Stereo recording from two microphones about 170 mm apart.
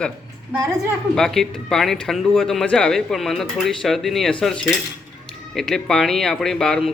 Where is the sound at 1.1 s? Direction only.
Centre (ahead or behind).